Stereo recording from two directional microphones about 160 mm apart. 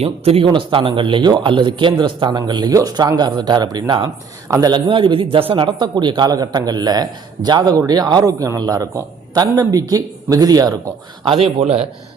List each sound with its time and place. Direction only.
0.0 s speech: 40° right (ahead or behind)
11.6 s a man's voice: 40° right (ahead or behind)